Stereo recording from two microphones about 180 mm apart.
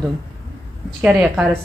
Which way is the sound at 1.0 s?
5° right (ahead or behind).